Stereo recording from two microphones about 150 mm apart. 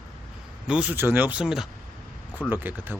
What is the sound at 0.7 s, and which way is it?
Speech, 10° right (ahead or behind).